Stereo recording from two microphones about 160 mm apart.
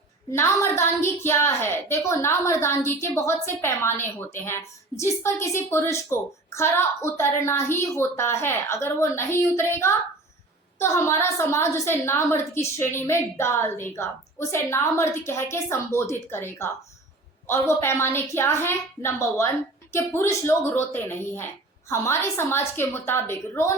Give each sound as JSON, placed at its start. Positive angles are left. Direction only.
{"t": 0.3, "sound": "a woman's voice", "side_deg": 15}